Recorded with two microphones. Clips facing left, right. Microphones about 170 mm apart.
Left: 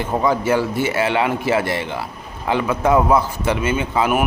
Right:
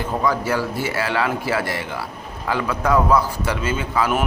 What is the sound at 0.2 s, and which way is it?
A man's voice, 25° left (ahead or behind).